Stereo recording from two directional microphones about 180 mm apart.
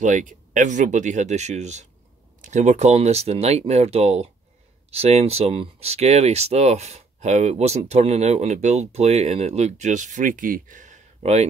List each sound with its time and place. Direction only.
0.0 s speech: 45° right (ahead or behind)